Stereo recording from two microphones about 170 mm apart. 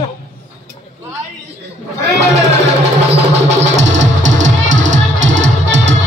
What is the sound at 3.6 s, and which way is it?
Music, 45° right (ahead or behind).